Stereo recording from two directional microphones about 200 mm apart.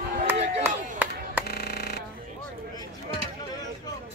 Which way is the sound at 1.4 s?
50° left (ahead or behind).